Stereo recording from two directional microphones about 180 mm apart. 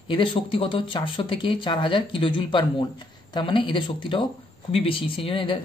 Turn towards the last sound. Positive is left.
turn(degrees=30)  # may be behind; listen again after turning